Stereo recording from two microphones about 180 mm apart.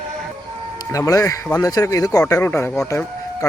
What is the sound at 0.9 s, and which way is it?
Speech, 20° left (ahead or behind).